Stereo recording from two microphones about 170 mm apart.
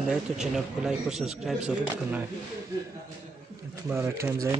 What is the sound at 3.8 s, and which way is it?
Speech, 15° right (ahead or behind).